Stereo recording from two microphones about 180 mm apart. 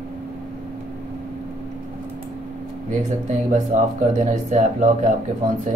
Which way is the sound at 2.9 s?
45° right (ahead or behind).